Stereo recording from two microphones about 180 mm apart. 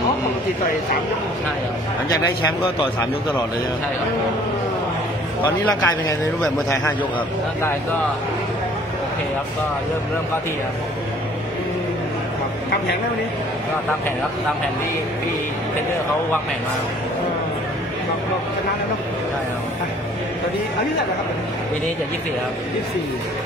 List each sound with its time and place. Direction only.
5.8 s speech: 15° left (ahead or behind)